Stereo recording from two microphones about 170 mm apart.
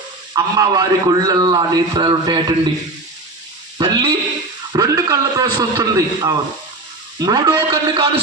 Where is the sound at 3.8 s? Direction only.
30° right (ahead or behind).